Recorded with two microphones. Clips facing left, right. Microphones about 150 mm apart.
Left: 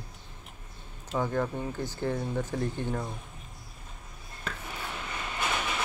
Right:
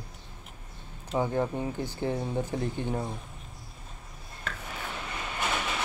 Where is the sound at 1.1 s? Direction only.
15° right (ahead or behind).